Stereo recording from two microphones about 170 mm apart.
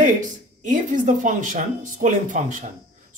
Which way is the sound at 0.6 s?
45° right (ahead or behind).